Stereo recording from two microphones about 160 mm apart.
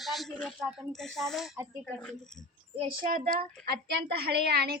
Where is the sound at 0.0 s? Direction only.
Centre (ahead or behind).